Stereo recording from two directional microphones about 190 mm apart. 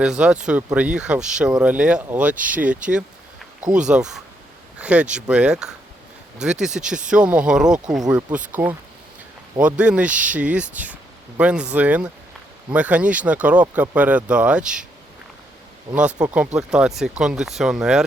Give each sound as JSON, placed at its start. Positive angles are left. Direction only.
{"t": 0.0, "sound": "speech", "side_deg": -5}
{"t": 3.8, "sound": "speech", "side_deg": -5}
{"t": 15.9, "sound": "speech", "side_deg": -25}
{"t": 16.2, "sound": "speech", "side_deg": -5}